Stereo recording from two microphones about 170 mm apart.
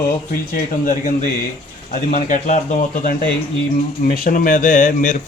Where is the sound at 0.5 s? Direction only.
50° left (ahead or behind).